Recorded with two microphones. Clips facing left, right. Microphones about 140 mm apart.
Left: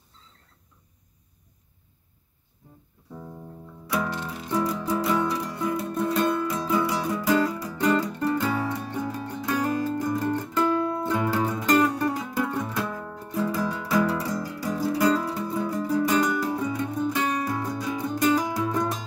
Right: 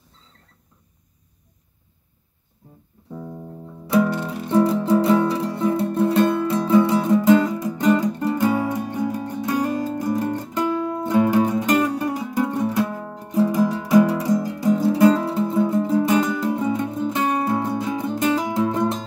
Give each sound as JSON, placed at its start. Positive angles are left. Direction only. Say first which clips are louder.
{"t": 3.6, "sound": "music", "louder": "right 10 dB", "side_deg": -30}
{"t": 4.1, "sound": "music", "louder": "right 7 dB", "side_deg": -50}
{"t": 4.6, "sound": "music", "louder": "right 8 dB", "side_deg": -30}